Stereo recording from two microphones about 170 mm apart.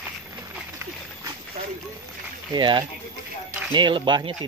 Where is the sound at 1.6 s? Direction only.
35° right (ahead or behind).